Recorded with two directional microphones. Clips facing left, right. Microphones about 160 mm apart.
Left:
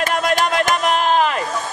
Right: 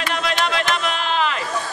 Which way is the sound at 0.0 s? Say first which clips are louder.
Left 4 dB; 45° left (ahead or behind).